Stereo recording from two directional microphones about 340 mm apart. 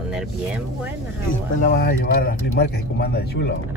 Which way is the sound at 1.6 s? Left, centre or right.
Left.